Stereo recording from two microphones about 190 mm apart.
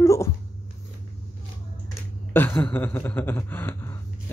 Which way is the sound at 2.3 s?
10° left (ahead or behind).